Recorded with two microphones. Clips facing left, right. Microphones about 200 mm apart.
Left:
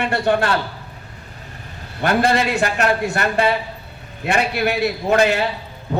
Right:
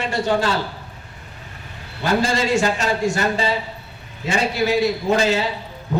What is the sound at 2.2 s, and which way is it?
A man's voice, 60° left (ahead or behind).